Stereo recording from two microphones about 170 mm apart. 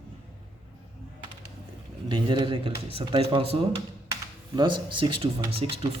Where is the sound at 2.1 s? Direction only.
30° right (ahead or behind).